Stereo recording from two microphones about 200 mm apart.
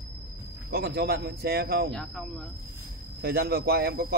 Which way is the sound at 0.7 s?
50° right (ahead or behind).